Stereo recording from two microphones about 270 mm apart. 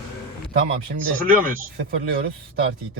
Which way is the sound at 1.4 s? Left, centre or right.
Right.